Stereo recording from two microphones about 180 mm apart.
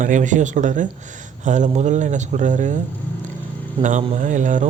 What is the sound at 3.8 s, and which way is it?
Speech, 45° right (ahead or behind).